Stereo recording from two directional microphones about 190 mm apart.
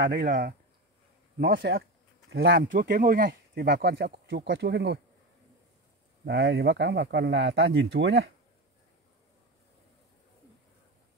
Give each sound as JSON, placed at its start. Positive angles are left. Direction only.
{"t": 0.1, "sound": "speech", "side_deg": -50}
{"t": 3.3, "sound": "speech", "side_deg": -60}
{"t": 6.2, "sound": "speech", "side_deg": -65}